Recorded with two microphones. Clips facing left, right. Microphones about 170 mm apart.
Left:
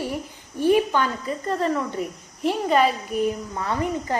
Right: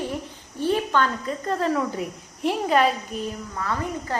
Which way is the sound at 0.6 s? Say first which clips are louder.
Left 3 dB; 15° left (ahead or behind).